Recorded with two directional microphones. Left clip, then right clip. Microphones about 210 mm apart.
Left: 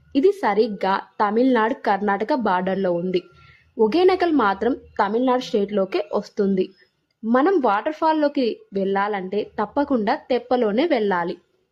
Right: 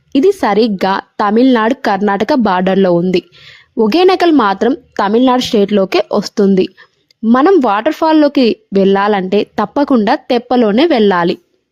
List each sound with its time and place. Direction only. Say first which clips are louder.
0.1 s a woman's voice: right 8 dB; 40° right (ahead or behind)